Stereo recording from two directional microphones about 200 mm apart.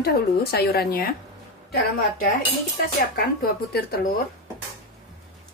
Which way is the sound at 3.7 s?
50° left (ahead or behind).